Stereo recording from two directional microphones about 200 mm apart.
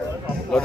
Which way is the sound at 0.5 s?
Centre (ahead or behind).